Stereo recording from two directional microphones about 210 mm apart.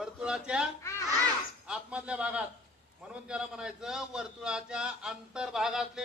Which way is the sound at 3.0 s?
5° right (ahead or behind).